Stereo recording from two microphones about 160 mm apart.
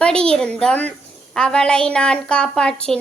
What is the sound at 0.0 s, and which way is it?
A woman's voice, 5° left (ahead or behind).